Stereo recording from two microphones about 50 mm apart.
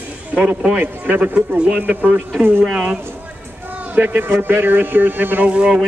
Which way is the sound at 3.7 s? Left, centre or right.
Right.